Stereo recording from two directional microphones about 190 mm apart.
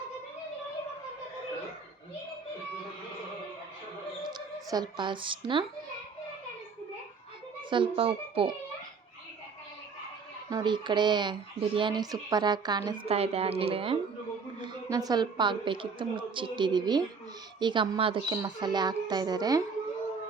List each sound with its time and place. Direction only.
4.3 s speech: 20° right (ahead or behind)
7.7 s speech: 25° right (ahead or behind)
10.5 s speech: 25° right (ahead or behind)